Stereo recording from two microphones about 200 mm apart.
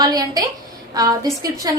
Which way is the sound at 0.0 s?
20° right (ahead or behind).